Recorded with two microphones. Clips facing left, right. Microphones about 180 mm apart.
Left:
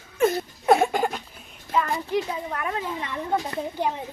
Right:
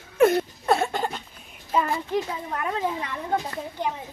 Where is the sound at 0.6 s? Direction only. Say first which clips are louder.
Left 8 dB; 15° left (ahead or behind).